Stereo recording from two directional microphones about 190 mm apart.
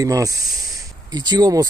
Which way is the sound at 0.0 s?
20° right (ahead or behind).